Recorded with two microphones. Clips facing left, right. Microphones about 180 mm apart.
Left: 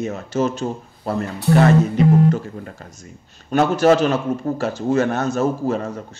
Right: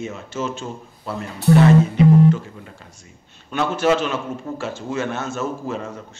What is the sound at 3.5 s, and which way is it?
Speech, 40° left (ahead or behind).